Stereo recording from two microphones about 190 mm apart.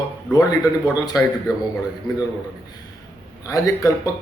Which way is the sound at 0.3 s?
20° left (ahead or behind).